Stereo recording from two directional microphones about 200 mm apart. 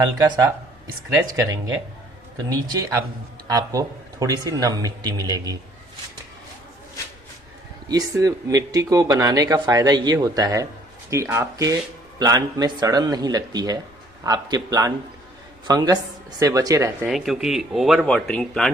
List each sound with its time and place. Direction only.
0.2 s speech: 15° right (ahead or behind)
2.5 s speech: 20° right (ahead or behind)
7.9 s speech: 15° right (ahead or behind)
17.1 s speech: centre (ahead or behind)